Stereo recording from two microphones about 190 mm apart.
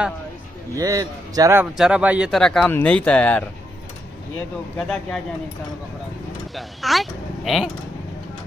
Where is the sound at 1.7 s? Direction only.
5° right (ahead or behind).